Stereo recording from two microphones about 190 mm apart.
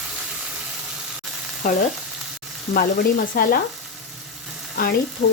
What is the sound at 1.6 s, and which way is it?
Speech, 40° left (ahead or behind).